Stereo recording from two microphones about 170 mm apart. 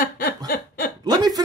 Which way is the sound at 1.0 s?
20° right (ahead or behind).